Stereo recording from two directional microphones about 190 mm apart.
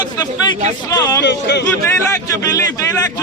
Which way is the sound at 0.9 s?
20° left (ahead or behind).